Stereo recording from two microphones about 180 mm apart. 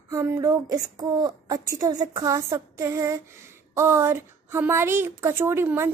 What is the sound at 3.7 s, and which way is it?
A woman's voice, 15° right (ahead or behind).